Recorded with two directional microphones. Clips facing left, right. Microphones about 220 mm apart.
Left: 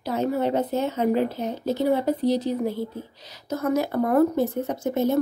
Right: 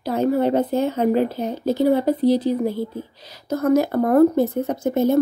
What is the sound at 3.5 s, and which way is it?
A woman's voice, 55° right (ahead or behind).